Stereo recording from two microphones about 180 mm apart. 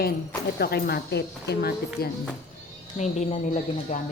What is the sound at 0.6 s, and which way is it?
Speech, 60° left (ahead or behind).